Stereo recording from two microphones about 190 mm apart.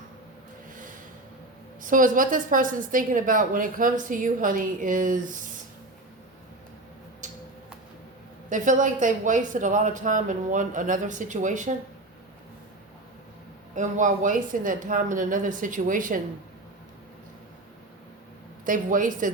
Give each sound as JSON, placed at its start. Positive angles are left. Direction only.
{"t": 1.8, "sound": "a woman's voice", "side_deg": -45}
{"t": 7.2, "sound": "a sound", "side_deg": -40}
{"t": 8.4, "sound": "speech", "side_deg": -40}
{"t": 13.7, "sound": "a woman's voice", "side_deg": -40}
{"t": 18.6, "sound": "a woman's voice", "side_deg": -45}